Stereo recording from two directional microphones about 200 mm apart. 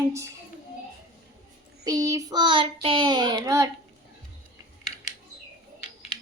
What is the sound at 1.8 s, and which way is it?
Child singing, 15° right (ahead or behind).